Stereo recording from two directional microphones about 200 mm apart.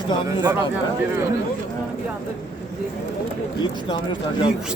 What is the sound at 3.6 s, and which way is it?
Speech, 20° left (ahead or behind).